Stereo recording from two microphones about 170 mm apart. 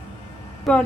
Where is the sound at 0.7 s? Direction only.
Centre (ahead or behind).